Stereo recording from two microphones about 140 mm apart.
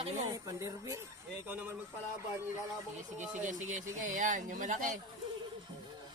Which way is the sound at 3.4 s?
65° right (ahead or behind).